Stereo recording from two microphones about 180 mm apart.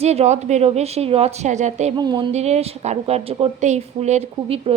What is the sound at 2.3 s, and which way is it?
A woman's voice, 35° right (ahead or behind).